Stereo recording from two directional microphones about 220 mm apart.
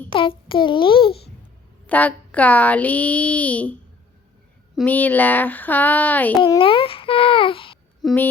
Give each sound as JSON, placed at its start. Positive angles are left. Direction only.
{"t": 0.1, "sound": "a child's voice", "side_deg": 25}
{"t": 1.9, "sound": "speech", "side_deg": 5}
{"t": 6.4, "sound": "a child's voice", "side_deg": 25}
{"t": 8.0, "sound": "a sound", "side_deg": 10}